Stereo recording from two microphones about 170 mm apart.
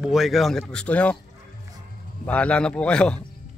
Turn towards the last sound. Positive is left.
turn(degrees=5)  # may be behind; listen again after turning